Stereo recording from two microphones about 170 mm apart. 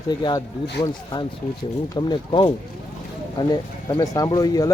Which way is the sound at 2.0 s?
30° left (ahead or behind).